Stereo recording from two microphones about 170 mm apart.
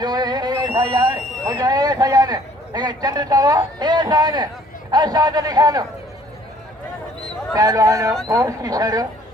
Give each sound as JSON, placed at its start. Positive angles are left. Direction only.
{"t": 0.0, "sound": "a sound", "side_deg": -25}
{"t": 4.9, "sound": "a man's voice", "side_deg": -25}
{"t": 7.5, "sound": "a man's voice", "side_deg": -20}